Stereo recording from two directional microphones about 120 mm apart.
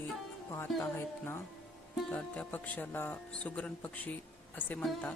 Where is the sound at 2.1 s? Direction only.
10° left (ahead or behind).